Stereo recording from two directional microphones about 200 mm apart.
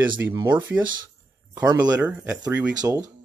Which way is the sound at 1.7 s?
10° right (ahead or behind).